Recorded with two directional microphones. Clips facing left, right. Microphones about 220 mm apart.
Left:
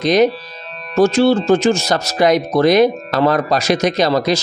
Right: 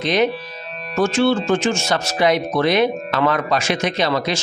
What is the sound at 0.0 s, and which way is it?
Speech, 40° left (ahead or behind).